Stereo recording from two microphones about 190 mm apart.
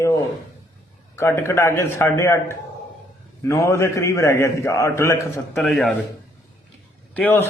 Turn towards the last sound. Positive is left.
turn(degrees=10)  # may be behind; listen again after turning